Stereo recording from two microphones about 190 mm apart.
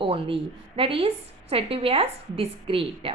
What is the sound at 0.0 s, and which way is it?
A woman's voice, 30° right (ahead or behind).